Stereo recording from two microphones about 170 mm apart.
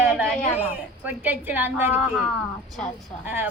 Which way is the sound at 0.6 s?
10° right (ahead or behind).